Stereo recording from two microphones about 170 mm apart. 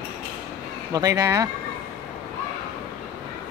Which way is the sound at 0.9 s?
20° right (ahead or behind).